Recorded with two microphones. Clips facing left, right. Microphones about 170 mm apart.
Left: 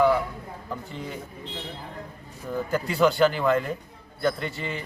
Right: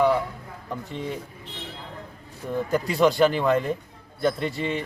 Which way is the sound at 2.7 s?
20° right (ahead or behind).